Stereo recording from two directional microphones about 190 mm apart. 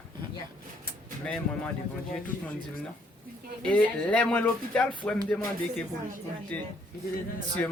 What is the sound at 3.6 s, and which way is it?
Speech, 5° left (ahead or behind).